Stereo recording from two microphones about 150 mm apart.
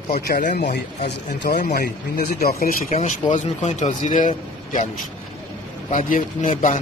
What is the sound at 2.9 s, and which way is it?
Speech, 50° left (ahead or behind).